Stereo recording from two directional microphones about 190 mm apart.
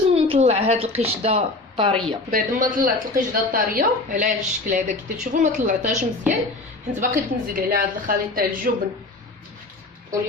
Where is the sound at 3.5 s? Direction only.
50° right (ahead or behind).